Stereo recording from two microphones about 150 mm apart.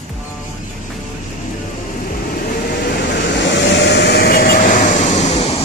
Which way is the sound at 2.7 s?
90° left.